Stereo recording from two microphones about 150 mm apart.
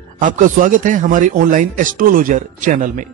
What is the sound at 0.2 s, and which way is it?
A man's voice, 60° right (ahead or behind).